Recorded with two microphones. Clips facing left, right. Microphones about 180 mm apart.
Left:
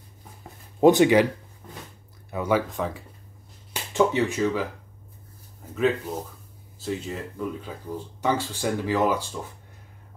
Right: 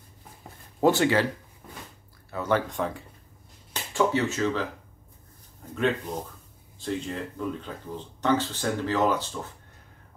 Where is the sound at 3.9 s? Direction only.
15° left (ahead or behind).